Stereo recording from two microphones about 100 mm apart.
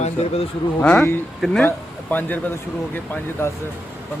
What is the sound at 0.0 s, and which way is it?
Speech, 90° left.